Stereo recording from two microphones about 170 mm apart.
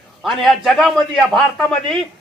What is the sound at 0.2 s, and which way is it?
A man's voice, centre (ahead or behind).